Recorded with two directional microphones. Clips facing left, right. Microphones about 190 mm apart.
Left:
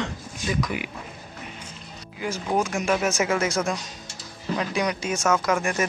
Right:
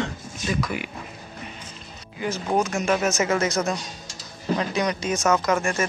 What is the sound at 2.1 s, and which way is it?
Speech, 10° left (ahead or behind).